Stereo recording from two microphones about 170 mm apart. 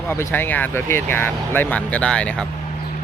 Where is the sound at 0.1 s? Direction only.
15° left (ahead or behind).